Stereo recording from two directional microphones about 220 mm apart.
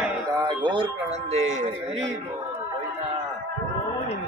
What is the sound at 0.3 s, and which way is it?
Music, 20° right (ahead or behind).